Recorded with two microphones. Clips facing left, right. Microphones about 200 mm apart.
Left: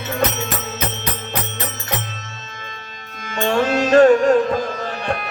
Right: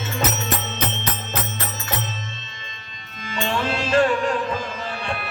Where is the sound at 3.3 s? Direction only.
45° left (ahead or behind).